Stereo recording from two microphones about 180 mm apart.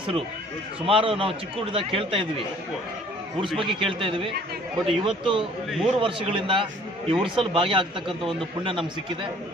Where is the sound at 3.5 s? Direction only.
30° right (ahead or behind).